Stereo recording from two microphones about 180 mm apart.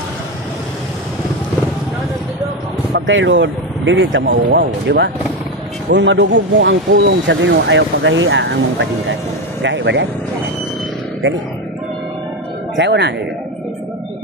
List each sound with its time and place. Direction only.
2.9 s speech: 90° right
12.7 s speech: 80° right